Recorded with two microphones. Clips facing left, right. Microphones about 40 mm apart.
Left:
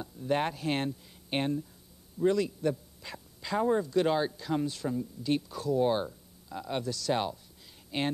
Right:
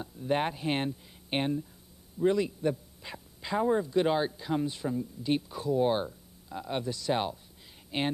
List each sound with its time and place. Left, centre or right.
0.0 s speech: centre
2.7 s dog: centre
3.5 s speech: centre
3.8 s speech: centre
6.0 s a sound: centre